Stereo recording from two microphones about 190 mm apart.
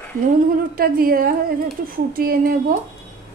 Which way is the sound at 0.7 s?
50° right (ahead or behind).